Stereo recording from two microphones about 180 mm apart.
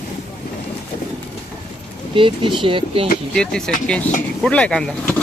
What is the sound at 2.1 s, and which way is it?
Speech, 30° right (ahead or behind).